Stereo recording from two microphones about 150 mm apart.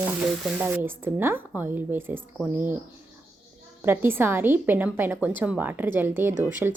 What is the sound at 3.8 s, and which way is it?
A woman's voice, 15° right (ahead or behind).